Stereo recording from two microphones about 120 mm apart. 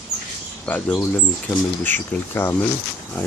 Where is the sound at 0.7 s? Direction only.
10° left (ahead or behind).